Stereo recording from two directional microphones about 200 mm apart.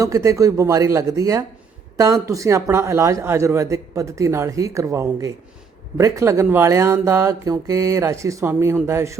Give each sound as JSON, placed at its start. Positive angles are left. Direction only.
{"t": 0.0, "sound": "a man's voice", "side_deg": -15}